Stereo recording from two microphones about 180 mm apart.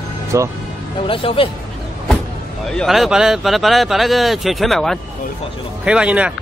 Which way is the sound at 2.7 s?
Centre (ahead or behind).